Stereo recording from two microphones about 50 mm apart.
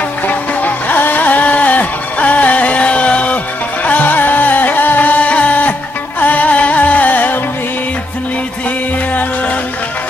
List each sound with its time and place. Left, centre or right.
0.6 s music: left